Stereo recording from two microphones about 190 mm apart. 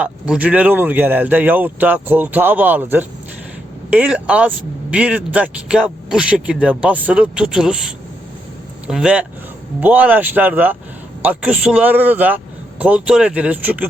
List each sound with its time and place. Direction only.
0.0 s speech: 5° right (ahead or behind)